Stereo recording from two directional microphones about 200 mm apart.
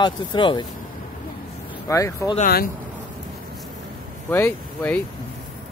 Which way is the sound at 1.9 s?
15° left (ahead or behind).